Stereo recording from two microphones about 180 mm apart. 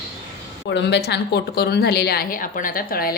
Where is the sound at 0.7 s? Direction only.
70° left (ahead or behind).